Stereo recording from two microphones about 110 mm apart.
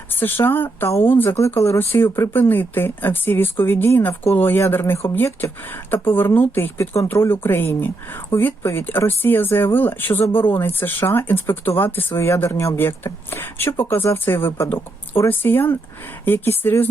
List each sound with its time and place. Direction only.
0.2 s speech: 20° left (ahead or behind)